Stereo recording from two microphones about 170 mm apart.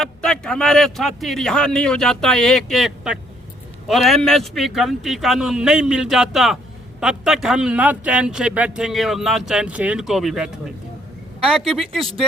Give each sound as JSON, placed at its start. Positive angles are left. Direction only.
{"t": 0.0, "sound": "a man's voice", "side_deg": 5}